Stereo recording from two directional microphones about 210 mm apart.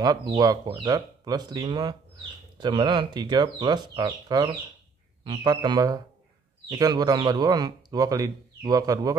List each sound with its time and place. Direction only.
0.3 s a man's voice: 20° right (ahead or behind)